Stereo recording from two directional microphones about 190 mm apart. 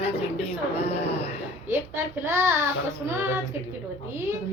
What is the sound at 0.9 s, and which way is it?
Speech, 35° left (ahead or behind).